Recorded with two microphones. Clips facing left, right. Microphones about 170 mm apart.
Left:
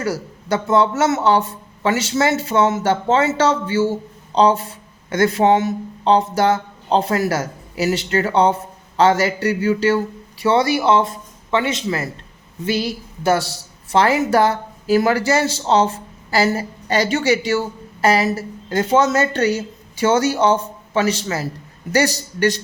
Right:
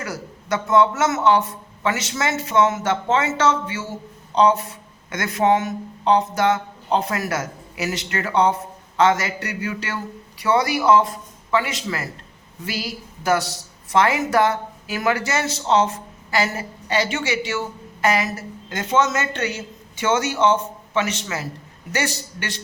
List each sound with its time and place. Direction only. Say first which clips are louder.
0.0 s a woman's voice: left 7 dB; 30° left (ahead or behind)